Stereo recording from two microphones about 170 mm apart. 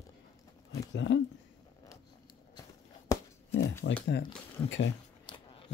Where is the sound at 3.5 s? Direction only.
90° left.